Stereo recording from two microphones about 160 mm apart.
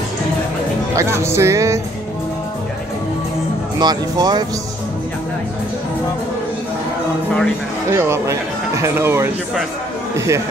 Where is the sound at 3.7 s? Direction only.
25° right (ahead or behind).